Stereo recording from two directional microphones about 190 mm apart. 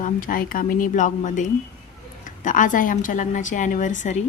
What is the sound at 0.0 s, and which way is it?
A woman's voice, 45° left (ahead or behind).